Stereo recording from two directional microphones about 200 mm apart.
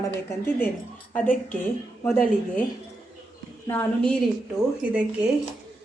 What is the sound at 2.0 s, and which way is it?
Speech, 10° left (ahead or behind).